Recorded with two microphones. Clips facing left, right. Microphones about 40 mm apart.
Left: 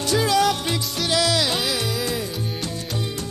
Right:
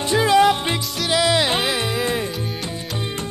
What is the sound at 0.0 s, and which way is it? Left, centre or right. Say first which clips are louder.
Music: right 4 dB; right.